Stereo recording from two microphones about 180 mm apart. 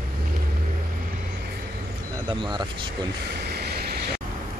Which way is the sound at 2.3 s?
25° right (ahead or behind).